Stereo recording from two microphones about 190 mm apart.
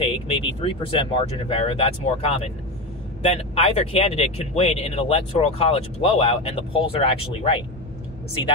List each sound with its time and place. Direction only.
0.4 s speech: 25° left (ahead or behind)